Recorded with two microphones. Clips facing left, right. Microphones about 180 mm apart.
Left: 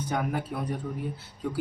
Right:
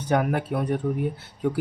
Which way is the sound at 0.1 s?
70° right (ahead or behind).